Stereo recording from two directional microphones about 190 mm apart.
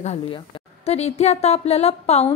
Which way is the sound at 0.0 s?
35° left (ahead or behind).